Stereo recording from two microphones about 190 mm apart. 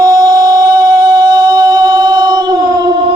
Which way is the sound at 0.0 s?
20° right (ahead or behind).